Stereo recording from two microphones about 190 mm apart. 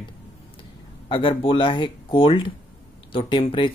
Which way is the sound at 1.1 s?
30° left (ahead or behind).